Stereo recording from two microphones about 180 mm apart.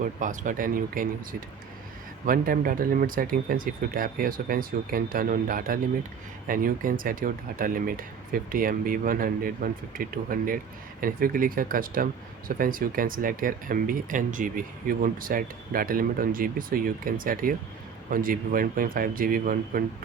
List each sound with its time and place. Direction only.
0.0 s speech: 45° right (ahead or behind)